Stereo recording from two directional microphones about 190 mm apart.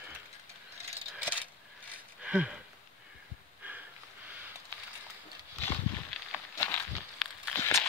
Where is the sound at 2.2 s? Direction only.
5° right (ahead or behind).